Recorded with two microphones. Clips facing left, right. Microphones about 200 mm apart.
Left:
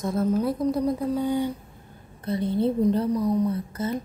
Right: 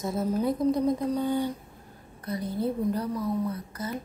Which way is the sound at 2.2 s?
25° left (ahead or behind).